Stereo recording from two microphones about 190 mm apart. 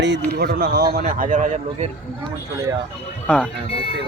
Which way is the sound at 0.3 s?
55° right (ahead or behind).